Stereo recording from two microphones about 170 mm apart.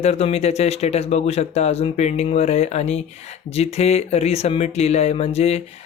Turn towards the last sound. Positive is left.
turn(degrees=40)  # may be behind; listen again after turning